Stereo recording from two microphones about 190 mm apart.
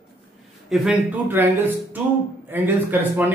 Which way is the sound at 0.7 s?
Centre (ahead or behind).